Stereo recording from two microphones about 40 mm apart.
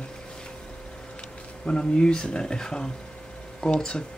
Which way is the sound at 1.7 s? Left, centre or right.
Left.